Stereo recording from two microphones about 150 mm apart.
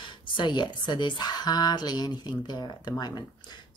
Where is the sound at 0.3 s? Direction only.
30° left (ahead or behind).